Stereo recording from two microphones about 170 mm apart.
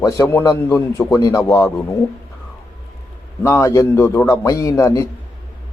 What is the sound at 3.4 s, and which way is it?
A man's voice, 15° left (ahead or behind).